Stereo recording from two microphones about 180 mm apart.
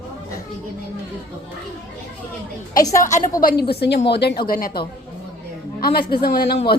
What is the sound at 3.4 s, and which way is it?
Speech, 60° left (ahead or behind).